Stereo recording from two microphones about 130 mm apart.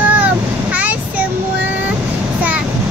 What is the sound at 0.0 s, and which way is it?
Vehicle, 10° right (ahead or behind).